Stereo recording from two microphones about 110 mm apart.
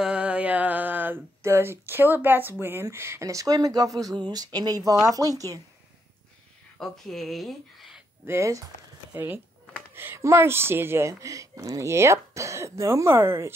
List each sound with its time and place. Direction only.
0.0 s a sound: 10° right (ahead or behind)
2.6 s speech: 20° right (ahead or behind)
6.8 s speech: 5° left (ahead or behind)
8.3 s a woman's voice: 30° right (ahead or behind)